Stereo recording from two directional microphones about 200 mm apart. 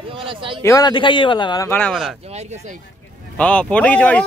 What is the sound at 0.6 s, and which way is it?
A man's voice, 15° left (ahead or behind).